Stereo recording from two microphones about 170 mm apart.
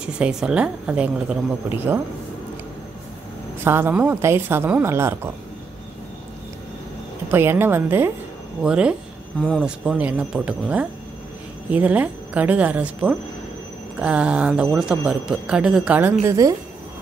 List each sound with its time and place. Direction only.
0.0 s speech: 5° right (ahead or behind)
3.6 s speech: 15° right (ahead or behind)
7.2 s speech: 15° right (ahead or behind)